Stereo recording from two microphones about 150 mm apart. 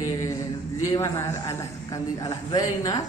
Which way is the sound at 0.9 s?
20° left (ahead or behind).